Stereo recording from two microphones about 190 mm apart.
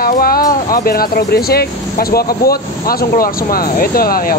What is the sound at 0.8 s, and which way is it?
Speech, 55° left (ahead or behind).